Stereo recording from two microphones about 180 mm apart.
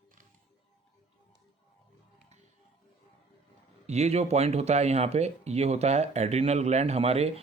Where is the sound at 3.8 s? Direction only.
40° right (ahead or behind).